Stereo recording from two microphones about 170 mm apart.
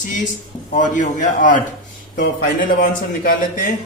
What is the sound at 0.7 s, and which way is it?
A man's voice, 45° left (ahead or behind).